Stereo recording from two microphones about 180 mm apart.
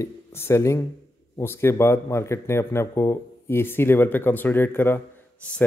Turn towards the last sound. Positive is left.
turn(degrees=5)  # may be behind; listen again after turning